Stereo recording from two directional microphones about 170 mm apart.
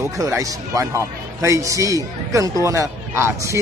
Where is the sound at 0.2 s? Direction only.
20° right (ahead or behind).